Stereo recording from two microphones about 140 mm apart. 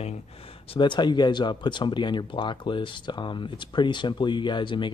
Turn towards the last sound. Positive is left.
turn(degrees=35)  # may be behind; listen again after turning